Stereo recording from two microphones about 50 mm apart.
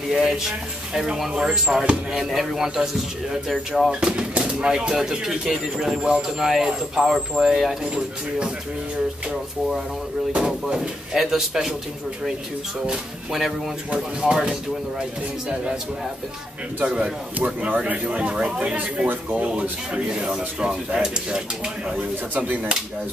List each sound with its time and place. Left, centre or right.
0.1 s speech: centre
7.8 s speech: centre
10.4 s speech: centre
13.9 s speech: centre
16.8 s speech: right
22.3 s speech: right